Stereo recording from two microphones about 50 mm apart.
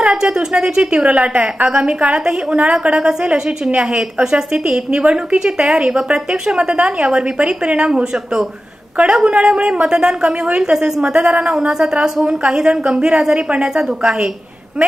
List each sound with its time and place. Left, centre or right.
0.0 s a woman's voice: centre
1.0 s a woman's voice: right